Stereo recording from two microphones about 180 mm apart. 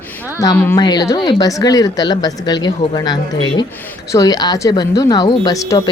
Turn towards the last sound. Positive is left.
turn(degrees=20)  # may be behind; listen again after turning